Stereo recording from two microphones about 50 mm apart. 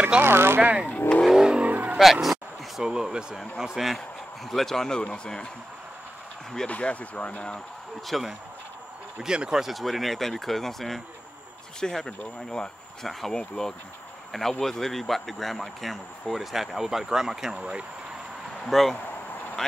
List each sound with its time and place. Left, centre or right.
0.2 s speech: right
0.6 s speech: right
0.9 s speech: left
1.4 s vehicle: centre
1.7 s vehicle: right
2.8 s speech: centre
6.7 s speech: left
8.1 s speech: centre
18.7 s speech: centre